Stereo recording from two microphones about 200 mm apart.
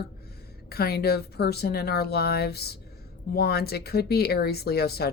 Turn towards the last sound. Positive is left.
turn(degrees=50)  # may be behind; listen again after turning